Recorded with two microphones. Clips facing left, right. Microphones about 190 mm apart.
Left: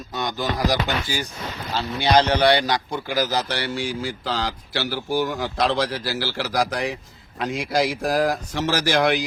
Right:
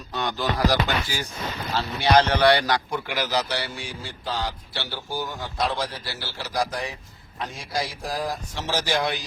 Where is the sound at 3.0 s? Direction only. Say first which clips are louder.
Left 3 dB; 40° left (ahead or behind); by 9.3 s 85° left.